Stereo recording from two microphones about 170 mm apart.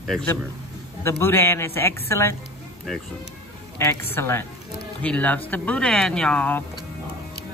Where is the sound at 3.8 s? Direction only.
15° left (ahead or behind).